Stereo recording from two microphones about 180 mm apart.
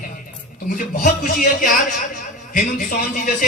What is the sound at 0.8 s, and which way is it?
Speech, 50° left (ahead or behind).